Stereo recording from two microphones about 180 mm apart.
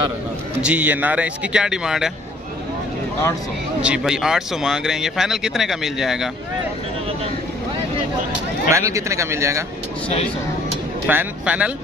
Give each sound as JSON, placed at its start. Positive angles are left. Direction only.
{"t": 0.6, "sound": "speech", "side_deg": -5}
{"t": 3.8, "sound": "speech", "side_deg": -5}
{"t": 8.3, "sound": "speech", "side_deg": -15}
{"t": 11.1, "sound": "speech", "side_deg": -10}